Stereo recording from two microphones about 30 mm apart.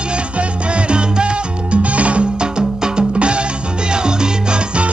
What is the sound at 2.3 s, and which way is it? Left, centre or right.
Music, right.